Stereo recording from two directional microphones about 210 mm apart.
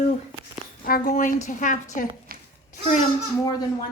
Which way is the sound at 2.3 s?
45° right (ahead or behind).